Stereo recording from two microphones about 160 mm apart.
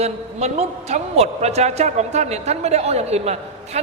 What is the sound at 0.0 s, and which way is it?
A woman's voice, 45° right (ahead or behind).